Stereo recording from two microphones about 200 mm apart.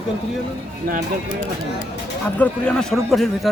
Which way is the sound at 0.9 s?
45° right (ahead or behind).